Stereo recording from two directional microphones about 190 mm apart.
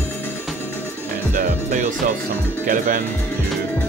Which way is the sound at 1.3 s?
35° right (ahead or behind).